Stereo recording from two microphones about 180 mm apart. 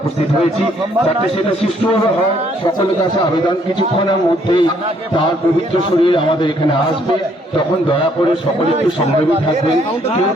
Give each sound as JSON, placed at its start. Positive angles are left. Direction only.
{"t": 4.0, "sound": "a man's voice", "side_deg": 25}
{"t": 6.0, "sound": "a man's voice", "side_deg": 25}